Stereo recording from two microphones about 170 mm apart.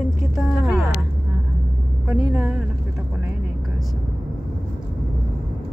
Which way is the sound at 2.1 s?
10° right (ahead or behind).